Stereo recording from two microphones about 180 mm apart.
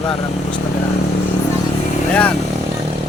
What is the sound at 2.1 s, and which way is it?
Speech, 5° left (ahead or behind).